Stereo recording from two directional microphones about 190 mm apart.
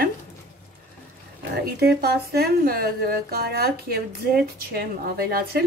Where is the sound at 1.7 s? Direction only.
55° right (ahead or behind).